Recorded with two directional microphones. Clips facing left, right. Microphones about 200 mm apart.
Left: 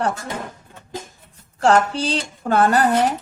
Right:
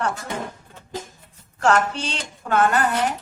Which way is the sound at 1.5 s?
35° left (ahead or behind).